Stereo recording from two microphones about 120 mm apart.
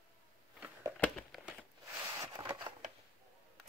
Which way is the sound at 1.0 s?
5° left (ahead or behind).